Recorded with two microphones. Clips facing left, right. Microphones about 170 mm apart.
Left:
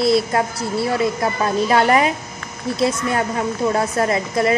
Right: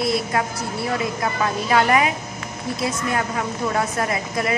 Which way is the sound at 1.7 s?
35° left (ahead or behind).